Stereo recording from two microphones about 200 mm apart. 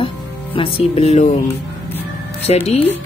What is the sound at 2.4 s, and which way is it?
Speech, 30° left (ahead or behind).